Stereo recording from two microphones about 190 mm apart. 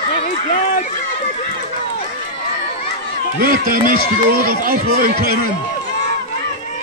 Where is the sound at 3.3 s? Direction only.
45° right (ahead or behind).